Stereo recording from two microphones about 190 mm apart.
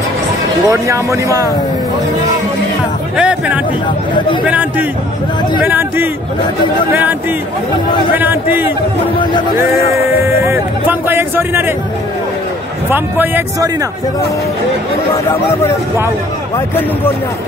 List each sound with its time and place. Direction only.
0.7 s speech: 15° right (ahead or behind)
3.2 s speech: 5° right (ahead or behind)
9.9 s speech: 15° right (ahead or behind)
12.9 s speech: 10° right (ahead or behind)
16.5 s speech: 10° left (ahead or behind)